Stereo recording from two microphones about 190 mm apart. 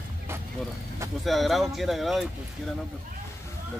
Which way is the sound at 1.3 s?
Centre (ahead or behind).